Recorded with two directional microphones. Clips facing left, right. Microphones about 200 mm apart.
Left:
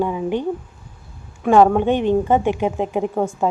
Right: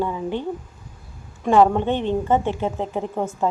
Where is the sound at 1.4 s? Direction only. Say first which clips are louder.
Left 3 dB; 10° left (ahead or behind).